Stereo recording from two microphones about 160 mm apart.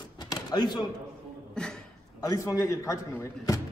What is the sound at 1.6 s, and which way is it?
Speech, 5° left (ahead or behind).